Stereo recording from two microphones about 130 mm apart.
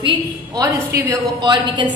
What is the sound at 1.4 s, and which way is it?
Speech, 35° right (ahead or behind).